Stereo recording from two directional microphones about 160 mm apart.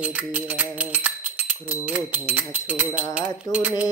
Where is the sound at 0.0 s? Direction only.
10° right (ahead or behind).